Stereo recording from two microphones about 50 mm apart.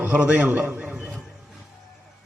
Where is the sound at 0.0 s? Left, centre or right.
Right.